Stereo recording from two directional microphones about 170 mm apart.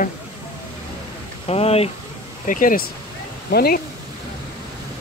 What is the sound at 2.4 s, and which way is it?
Speech, 55° left (ahead or behind).